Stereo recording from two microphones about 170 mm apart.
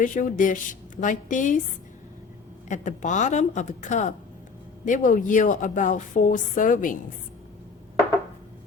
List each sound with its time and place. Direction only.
0.0 s a woman's voice: 50° left (ahead or behind)
2.6 s a woman's voice: 45° left (ahead or behind)